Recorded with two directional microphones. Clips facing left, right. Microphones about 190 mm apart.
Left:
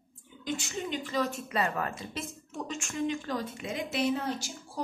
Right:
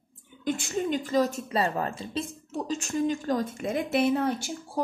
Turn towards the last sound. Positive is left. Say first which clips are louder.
# right 5 dB
turn(degrees=-55)  # may be behind; listen again after turning